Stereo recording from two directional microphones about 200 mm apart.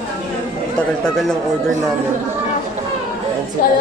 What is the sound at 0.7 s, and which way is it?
Speech, centre (ahead or behind).